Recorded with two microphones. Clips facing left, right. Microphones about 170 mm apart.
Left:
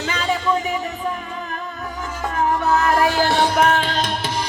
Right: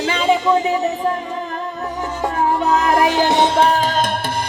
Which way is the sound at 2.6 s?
15° right (ahead or behind).